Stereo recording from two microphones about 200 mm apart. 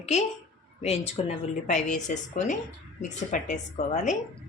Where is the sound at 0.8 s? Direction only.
30° left (ahead or behind).